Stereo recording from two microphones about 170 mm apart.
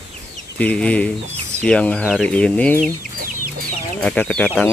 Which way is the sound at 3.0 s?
55° right (ahead or behind).